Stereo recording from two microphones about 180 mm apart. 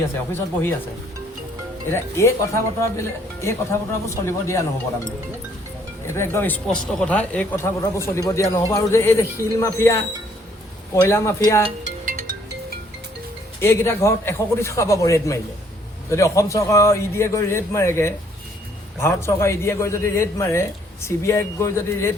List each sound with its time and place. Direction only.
1.9 s a man's voice: 15° left (ahead or behind)
6.1 s a man's voice: 15° left (ahead or behind)
11.8 s music: 45° right (ahead or behind)
13.6 s a man's voice: 15° left (ahead or behind)